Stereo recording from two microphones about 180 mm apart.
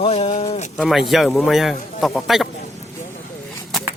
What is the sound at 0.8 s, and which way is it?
Speech, centre (ahead or behind).